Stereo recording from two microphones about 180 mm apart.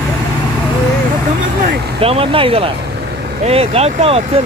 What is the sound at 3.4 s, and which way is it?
Speech, 35° right (ahead or behind).